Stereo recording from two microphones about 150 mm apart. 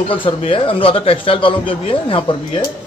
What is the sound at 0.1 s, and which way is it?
A man's voice, 35° left (ahead or behind).